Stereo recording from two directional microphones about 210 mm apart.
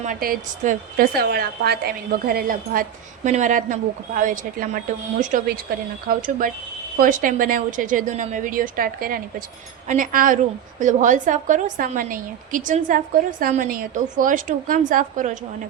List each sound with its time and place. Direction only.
0.0 s a woman's voice: 40° right (ahead or behind)